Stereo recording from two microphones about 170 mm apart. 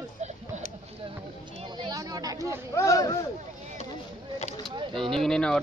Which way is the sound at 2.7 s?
20° left (ahead or behind).